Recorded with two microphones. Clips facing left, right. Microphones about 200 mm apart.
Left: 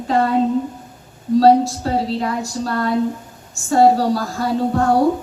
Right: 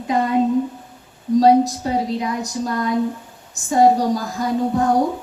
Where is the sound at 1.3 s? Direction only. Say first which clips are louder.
Left 1 dB; 15° right (ahead or behind).